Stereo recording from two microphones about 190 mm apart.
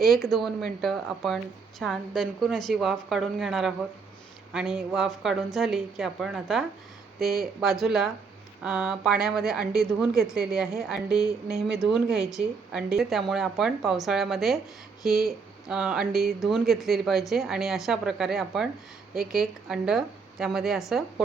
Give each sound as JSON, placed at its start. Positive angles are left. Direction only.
{"t": 0.0, "sound": "speech", "side_deg": 0}
{"t": 7.2, "sound": "speech", "side_deg": -55}
{"t": 7.6, "sound": "speech", "side_deg": 0}